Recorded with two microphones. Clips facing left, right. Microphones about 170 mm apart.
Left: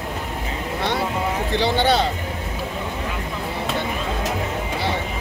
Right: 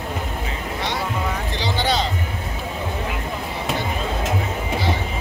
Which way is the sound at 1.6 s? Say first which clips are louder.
Left 4 dB; 60° left (ahead or behind).